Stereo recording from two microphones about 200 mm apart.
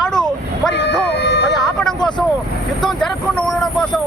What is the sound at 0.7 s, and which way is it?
Speech, 55° left (ahead or behind).